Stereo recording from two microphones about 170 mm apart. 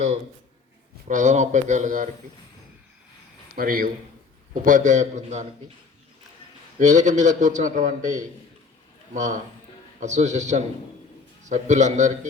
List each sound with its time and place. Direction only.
1.0 s a man's voice: 45° right (ahead or behind)
3.5 s a man's voice: 60° right (ahead or behind)
6.7 s a man's voice: 45° right (ahead or behind)